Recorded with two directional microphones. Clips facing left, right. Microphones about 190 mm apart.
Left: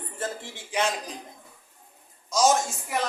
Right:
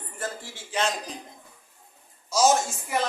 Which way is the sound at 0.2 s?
20° left (ahead or behind).